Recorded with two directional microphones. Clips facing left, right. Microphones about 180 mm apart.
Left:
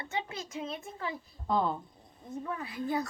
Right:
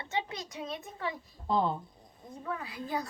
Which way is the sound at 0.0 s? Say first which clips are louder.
Right 1 dB; 20° right (ahead or behind).